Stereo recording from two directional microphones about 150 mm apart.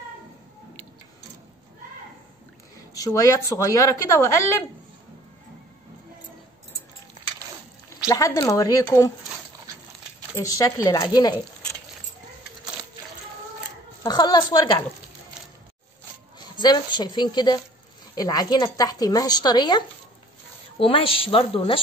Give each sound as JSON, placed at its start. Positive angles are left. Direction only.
{"t": 2.9, "sound": "a woman's voice", "side_deg": 25}
{"t": 8.1, "sound": "a woman's voice", "side_deg": 20}
{"t": 10.3, "sound": "a woman's voice", "side_deg": 20}
{"t": 14.0, "sound": "a woman's voice", "side_deg": 25}
{"t": 16.5, "sound": "a woman's voice", "side_deg": 30}
{"t": 20.8, "sound": "a woman's voice", "side_deg": 35}